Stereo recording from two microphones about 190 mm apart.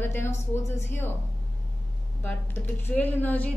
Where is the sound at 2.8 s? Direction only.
10° left (ahead or behind).